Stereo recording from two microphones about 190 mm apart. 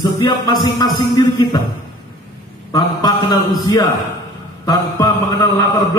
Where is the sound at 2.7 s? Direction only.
20° left (ahead or behind).